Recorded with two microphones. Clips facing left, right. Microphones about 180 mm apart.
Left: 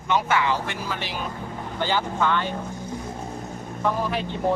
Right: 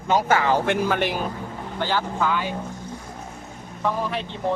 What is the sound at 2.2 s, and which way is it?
Speech, 5° right (ahead or behind).